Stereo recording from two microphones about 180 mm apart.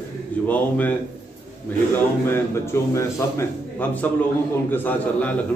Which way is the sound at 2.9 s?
15° left (ahead or behind).